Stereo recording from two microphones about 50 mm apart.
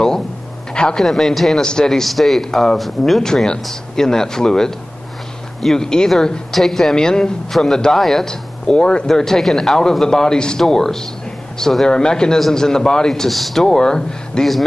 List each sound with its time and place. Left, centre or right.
0.7 s a man's voice: centre
1.0 s speech: centre
1.6 s a woman's voice: centre
1.9 s a woman's voice: centre
9.1 s a woman's voice: centre
13.7 s a woman's voice: centre